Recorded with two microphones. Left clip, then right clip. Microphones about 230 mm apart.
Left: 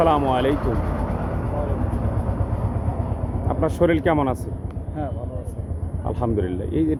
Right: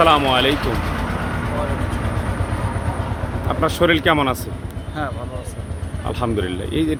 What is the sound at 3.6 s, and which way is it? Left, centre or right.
Speech, centre.